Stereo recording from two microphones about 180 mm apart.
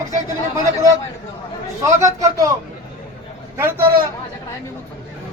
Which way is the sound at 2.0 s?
20° right (ahead or behind).